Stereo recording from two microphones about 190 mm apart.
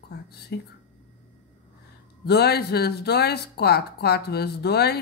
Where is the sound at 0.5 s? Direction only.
60° left (ahead or behind).